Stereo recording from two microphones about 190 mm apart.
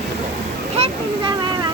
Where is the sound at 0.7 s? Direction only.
30° right (ahead or behind).